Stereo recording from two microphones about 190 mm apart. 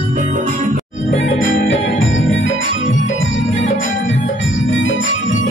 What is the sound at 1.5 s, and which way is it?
Music, 90° left.